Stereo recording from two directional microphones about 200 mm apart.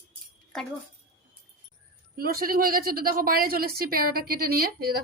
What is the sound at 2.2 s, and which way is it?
A woman's voice, 50° right (ahead or behind).